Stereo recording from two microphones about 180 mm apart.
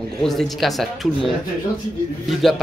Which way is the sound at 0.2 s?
Centre (ahead or behind).